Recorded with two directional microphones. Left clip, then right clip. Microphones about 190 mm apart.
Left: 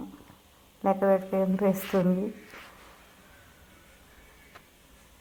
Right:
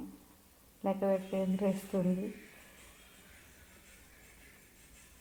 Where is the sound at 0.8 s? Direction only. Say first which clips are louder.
Left 8 dB; 10° left (ahead or behind).